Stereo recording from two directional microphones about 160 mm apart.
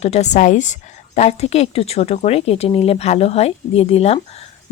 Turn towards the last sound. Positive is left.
turn(degrees=40)  # may be behind; listen again after turning